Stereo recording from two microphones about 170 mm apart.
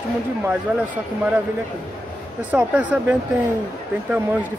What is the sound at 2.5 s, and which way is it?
Speech, 10° right (ahead or behind).